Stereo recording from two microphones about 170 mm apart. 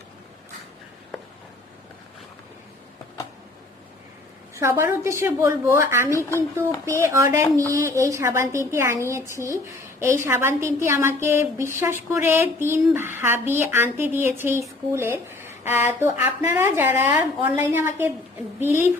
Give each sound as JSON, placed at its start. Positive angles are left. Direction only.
{"t": 4.5, "sound": "speech", "side_deg": -15}